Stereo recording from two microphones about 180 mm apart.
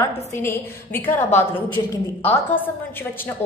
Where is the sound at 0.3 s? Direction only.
15° left (ahead or behind).